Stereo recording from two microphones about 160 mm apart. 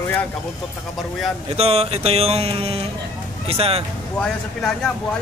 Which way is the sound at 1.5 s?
40° right (ahead or behind).